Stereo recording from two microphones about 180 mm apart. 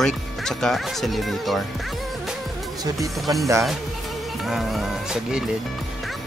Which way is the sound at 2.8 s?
20° right (ahead or behind).